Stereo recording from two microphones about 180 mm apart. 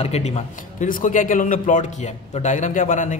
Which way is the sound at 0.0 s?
35° left (ahead or behind).